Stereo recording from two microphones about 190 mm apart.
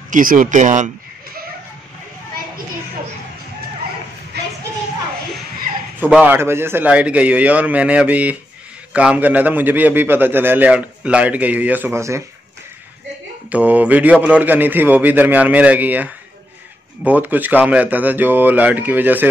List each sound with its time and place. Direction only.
0.1 s speech: 45° right (ahead or behind)
4.3 s a sound: 60° right (ahead or behind)
5.9 s a man's voice: 10° right (ahead or behind)
13.5 s a man's voice: 10° right (ahead or behind)